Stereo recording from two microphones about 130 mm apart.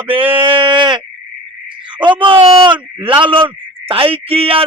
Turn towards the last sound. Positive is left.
turn(degrees=-45)  # may be behind; listen again after turning